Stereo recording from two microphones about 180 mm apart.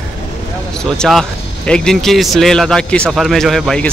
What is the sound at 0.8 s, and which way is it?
A man's voice, centre (ahead or behind).